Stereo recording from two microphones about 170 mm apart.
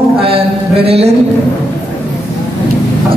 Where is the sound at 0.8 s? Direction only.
35° right (ahead or behind).